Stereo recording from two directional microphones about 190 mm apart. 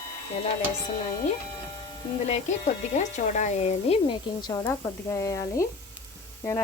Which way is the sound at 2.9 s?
40° left (ahead or behind).